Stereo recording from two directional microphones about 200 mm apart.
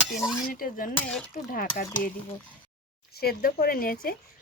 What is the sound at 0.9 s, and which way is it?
Speech, 5° left (ahead or behind).